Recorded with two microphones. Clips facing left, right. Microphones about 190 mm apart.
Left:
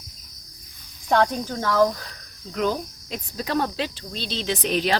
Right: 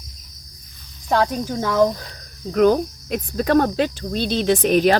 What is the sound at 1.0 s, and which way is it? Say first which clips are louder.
Speech: right 1 dB; 5° right (ahead or behind).